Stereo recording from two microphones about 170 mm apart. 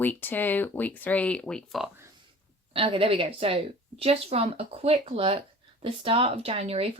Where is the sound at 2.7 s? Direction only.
30° right (ahead or behind).